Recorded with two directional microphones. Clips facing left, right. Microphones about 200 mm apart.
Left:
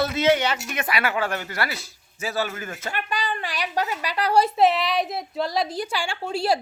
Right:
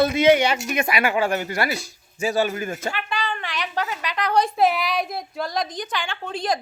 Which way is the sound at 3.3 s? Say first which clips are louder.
Even; 35° left (ahead or behind).